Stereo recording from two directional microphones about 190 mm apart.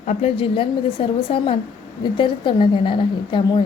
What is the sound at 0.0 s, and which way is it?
A woman's voice, 35° left (ahead or behind).